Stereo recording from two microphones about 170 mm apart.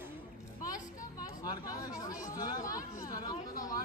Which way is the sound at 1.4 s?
20° left (ahead or behind).